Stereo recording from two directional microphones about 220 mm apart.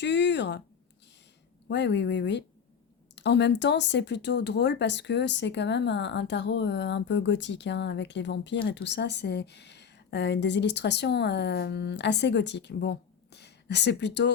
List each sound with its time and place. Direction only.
0.0 s speech: 50° left (ahead or behind)
1.6 s a woman's voice: 55° left (ahead or behind)